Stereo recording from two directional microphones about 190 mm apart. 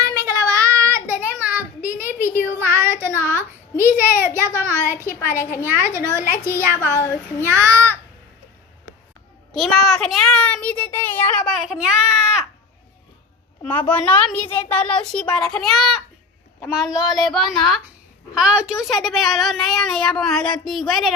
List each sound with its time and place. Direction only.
0.0 s child singing: 20° right (ahead or behind)
2.2 s a sound: 10° left (ahead or behind)
2.6 s child singing: 10° right (ahead or behind)
4.4 s speech: 15° right (ahead or behind)
5.4 s speech: 15° left (ahead or behind)
5.6 s speech: 15° right (ahead or behind)
6.7 s speech: 10° left (ahead or behind)
7.4 s speech: 15° right (ahead or behind)
9.6 s a child's voice: centre (ahead or behind)
13.6 s a child's voice: 10° left (ahead or behind)